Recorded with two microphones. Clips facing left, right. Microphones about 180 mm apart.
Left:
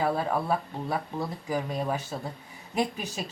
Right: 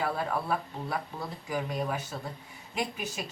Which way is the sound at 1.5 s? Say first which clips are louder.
Left 1 dB; 35° left (ahead or behind).